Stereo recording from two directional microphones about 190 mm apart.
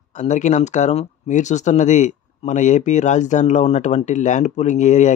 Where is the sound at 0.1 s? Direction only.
40° left (ahead or behind).